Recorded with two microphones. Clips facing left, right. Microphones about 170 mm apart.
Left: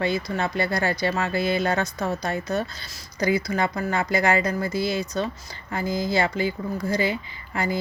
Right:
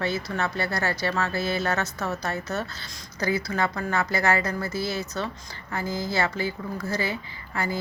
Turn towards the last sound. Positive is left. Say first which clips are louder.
# left 3 dB
turn(degrees=15)  # may be behind; listen again after turning